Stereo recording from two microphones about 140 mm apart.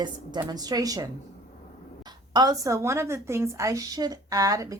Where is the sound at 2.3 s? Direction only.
30° right (ahead or behind).